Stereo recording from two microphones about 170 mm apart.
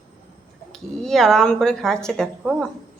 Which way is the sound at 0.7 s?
5° left (ahead or behind).